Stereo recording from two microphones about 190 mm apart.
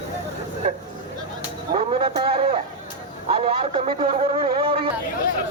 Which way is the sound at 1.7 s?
30° right (ahead or behind).